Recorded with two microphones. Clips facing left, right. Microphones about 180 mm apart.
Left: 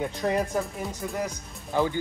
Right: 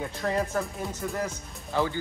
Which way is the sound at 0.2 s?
15° left (ahead or behind).